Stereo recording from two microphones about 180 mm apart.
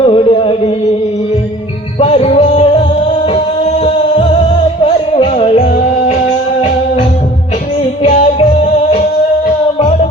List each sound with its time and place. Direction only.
0.0 s music: 30° left (ahead or behind)
2.0 s music: 35° left (ahead or behind)
8.0 s music: 40° left (ahead or behind)